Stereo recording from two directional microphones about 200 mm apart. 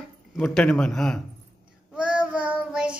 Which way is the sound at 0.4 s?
5° left (ahead or behind).